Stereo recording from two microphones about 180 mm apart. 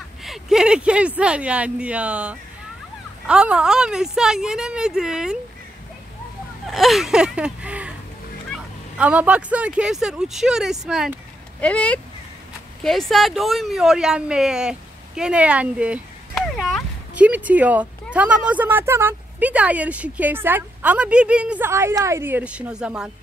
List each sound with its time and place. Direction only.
0.2 s speech: centre (ahead or behind)
6.7 s speech: centre (ahead or behind)
8.9 s speech: 5° right (ahead or behind)